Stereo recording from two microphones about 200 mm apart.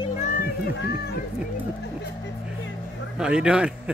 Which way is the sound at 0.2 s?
40° left (ahead or behind).